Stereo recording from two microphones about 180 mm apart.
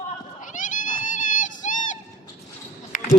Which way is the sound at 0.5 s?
45° left (ahead or behind).